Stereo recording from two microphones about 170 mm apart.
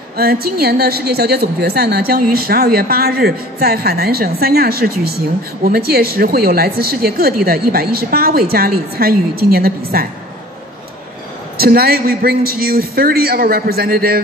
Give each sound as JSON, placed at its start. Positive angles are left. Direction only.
{"t": 0.2, "sound": "a woman's voice", "side_deg": -65}
{"t": 11.5, "sound": "a woman's voice", "side_deg": -65}